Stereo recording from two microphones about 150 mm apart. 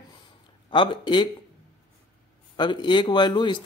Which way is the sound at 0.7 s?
35° left (ahead or behind).